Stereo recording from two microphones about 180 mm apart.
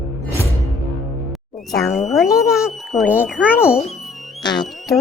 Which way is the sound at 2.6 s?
5° right (ahead or behind).